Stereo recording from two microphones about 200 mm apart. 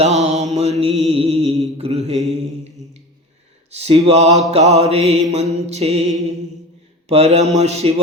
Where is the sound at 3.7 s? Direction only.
30° right (ahead or behind).